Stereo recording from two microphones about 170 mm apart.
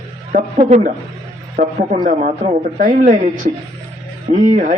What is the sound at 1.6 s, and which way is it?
Speech, 65° right (ahead or behind).